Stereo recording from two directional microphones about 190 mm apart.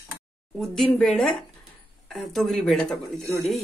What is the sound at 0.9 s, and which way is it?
Speech, 5° left (ahead or behind).